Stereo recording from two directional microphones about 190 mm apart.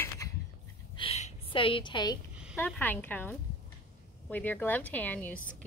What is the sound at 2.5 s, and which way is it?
A woman's voice, 10° left (ahead or behind).